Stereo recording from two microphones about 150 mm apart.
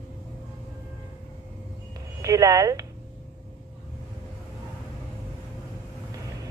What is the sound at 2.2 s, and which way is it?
Speech, 25° right (ahead or behind).